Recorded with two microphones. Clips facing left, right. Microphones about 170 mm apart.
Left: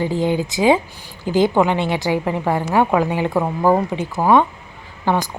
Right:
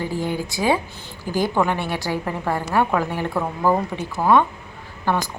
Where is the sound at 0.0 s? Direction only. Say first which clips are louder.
Left 6 dB; 20° left (ahead or behind).